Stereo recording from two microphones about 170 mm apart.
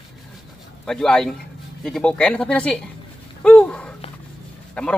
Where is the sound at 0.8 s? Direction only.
5° left (ahead or behind).